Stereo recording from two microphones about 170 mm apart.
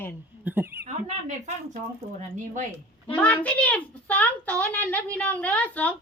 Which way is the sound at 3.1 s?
10° left (ahead or behind).